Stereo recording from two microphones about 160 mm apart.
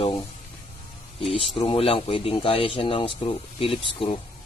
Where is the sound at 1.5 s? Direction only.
35° left (ahead or behind).